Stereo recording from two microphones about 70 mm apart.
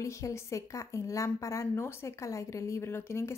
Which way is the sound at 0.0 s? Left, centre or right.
Left.